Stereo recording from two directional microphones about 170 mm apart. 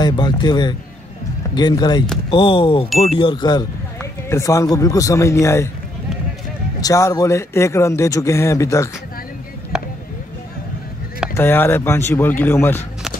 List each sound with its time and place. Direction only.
0.0 s speech: 25° left (ahead or behind)
6.8 s a man's voice: 20° left (ahead or behind)
9.7 s a sound: 5° right (ahead or behind)
11.3 s a man's voice: 15° left (ahead or behind)